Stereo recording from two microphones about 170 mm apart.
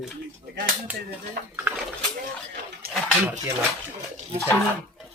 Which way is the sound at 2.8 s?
65° right (ahead or behind).